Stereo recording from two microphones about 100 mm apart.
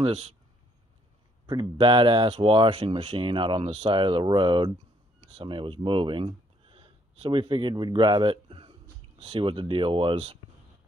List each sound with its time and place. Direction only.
1.4 s speech: 50° right (ahead or behind); by 10.4 s 65° right (ahead or behind)